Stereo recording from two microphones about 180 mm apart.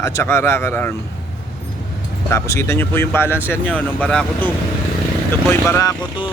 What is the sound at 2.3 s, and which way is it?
Speech, 15° left (ahead or behind).